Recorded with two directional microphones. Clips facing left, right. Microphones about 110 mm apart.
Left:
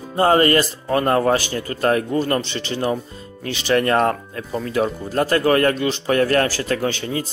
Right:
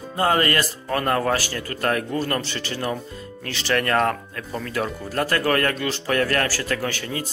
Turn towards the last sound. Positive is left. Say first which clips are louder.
# left 4 dB
turn(degrees=25)  # may be behind; listen again after turning